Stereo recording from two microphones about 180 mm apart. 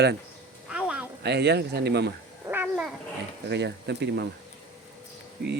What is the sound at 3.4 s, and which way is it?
Speech, 75° right (ahead or behind).